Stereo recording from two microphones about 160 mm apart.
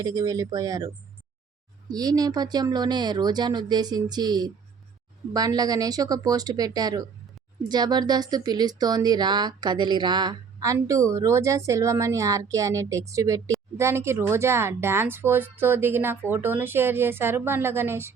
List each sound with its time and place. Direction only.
0.0 s speech: 25° right (ahead or behind)
1.9 s speech: 25° right (ahead or behind)